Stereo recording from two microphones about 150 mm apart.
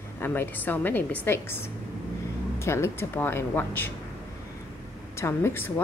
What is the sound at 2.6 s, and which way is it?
Speech, 20° left (ahead or behind).